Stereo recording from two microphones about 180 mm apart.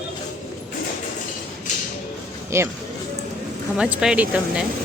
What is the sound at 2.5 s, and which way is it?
Speech, 15° right (ahead or behind).